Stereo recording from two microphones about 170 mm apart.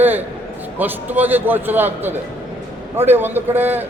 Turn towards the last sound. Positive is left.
turn(degrees=-10)  # may be behind; listen again after turning